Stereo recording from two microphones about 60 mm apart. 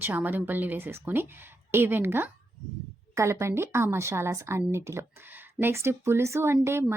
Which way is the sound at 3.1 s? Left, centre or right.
Right.